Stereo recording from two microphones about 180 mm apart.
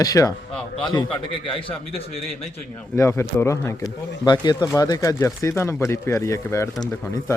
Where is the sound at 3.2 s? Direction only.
15° left (ahead or behind).